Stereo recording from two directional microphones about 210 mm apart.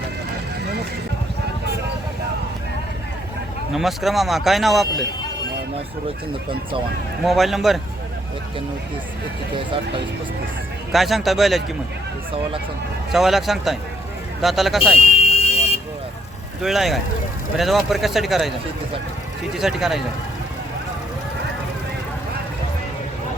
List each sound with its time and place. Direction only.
3.7 s speech: centre (ahead or behind)
7.3 s speech: centre (ahead or behind)
10.9 s speech: centre (ahead or behind)
13.1 s speech: centre (ahead or behind)
14.9 s buzzer: 30° left (ahead or behind)
16.6 s speech: centre (ahead or behind)
19.5 s speech: centre (ahead or behind)